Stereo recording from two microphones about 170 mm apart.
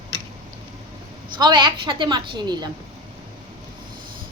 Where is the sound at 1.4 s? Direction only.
25° right (ahead or behind).